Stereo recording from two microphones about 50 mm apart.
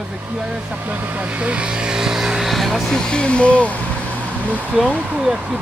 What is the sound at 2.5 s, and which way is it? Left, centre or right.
Music, centre.